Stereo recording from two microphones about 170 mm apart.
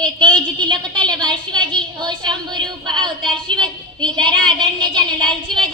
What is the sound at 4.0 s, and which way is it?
Child singing, 25° right (ahead or behind).